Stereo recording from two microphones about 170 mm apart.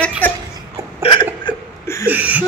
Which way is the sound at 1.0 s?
30° left (ahead or behind).